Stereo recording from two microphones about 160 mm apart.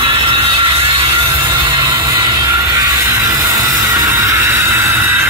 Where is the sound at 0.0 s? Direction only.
35° right (ahead or behind).